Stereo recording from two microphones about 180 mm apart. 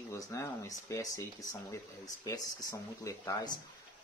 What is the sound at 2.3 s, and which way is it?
Speech, 20° left (ahead or behind).